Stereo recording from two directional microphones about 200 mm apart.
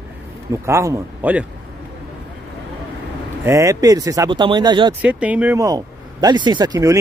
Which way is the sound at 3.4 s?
15° right (ahead or behind).